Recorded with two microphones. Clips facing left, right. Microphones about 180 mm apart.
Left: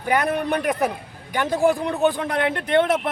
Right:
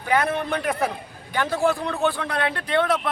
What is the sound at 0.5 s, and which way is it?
Speech, 15° left (ahead or behind).